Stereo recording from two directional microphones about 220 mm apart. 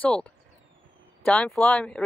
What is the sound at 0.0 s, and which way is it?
Speech, 5° left (ahead or behind).